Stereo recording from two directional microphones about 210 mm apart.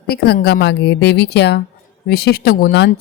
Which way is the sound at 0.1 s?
50° left (ahead or behind).